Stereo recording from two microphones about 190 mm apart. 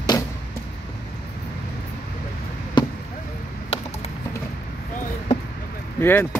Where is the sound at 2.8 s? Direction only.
25° left (ahead or behind).